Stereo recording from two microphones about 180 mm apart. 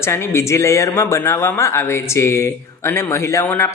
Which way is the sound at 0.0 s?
15° left (ahead or behind).